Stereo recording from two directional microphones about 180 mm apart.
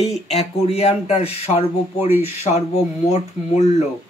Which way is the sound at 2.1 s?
10° right (ahead or behind).